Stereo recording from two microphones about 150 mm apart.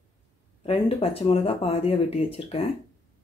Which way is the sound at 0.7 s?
40° left (ahead or behind).